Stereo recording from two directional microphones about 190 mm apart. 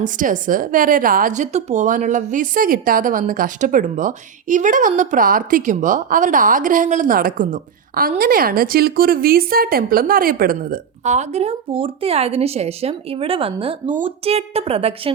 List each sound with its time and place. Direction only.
0.0 s a woman's voice: 45° right (ahead or behind)